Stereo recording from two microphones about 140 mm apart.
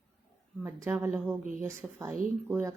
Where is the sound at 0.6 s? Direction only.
15° right (ahead or behind).